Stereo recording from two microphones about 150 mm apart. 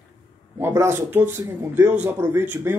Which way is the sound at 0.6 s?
15° right (ahead or behind).